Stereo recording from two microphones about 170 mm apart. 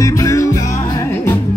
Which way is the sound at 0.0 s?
20° left (ahead or behind).